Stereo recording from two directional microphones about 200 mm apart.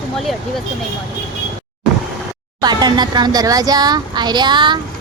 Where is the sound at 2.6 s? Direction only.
20° right (ahead or behind).